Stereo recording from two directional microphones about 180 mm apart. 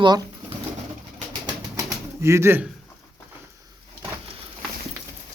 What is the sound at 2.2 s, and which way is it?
Speech, 15° right (ahead or behind).